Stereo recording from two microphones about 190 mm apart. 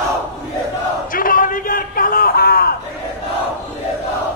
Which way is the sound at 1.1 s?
45° left (ahead or behind).